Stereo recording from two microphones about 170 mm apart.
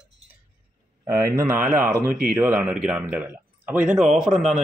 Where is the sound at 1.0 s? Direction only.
15° right (ahead or behind).